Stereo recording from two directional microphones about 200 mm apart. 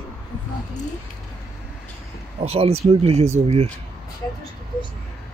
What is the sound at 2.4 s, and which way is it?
Speech, 30° right (ahead or behind).